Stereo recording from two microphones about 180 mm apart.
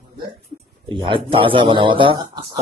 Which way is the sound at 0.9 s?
30° right (ahead or behind).